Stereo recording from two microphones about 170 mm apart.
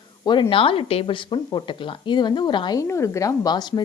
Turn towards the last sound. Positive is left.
turn(degrees=25)  # may be behind; listen again after turning